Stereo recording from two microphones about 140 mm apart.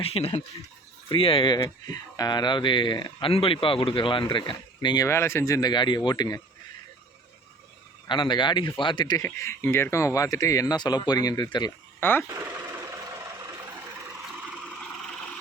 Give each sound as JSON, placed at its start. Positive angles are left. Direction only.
{"t": 0.0, "sound": "speech", "side_deg": 45}
{"t": 5.0, "sound": "speech", "side_deg": 20}
{"t": 8.0, "sound": "speech", "side_deg": 35}
{"t": 9.1, "sound": "speech", "side_deg": 20}
{"t": 11.9, "sound": "speech", "side_deg": 15}